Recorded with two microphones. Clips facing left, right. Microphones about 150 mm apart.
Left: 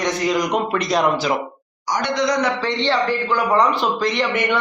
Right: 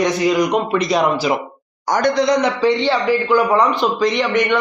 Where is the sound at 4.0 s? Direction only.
Centre (ahead or behind).